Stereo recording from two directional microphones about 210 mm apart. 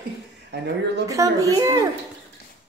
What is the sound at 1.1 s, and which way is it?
Speech, 15° right (ahead or behind).